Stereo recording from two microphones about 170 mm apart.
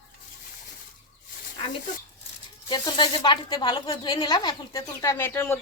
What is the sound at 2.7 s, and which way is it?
Speech, 25° left (ahead or behind).